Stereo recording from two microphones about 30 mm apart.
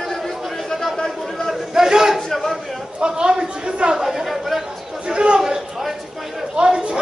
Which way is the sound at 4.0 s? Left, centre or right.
Centre.